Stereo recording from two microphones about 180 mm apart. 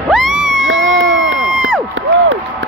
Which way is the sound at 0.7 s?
90° right.